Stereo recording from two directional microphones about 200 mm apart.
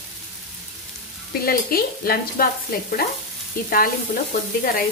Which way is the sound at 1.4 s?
50° left (ahead or behind).